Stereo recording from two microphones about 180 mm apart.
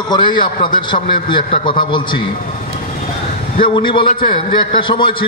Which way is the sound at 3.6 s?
25° left (ahead or behind).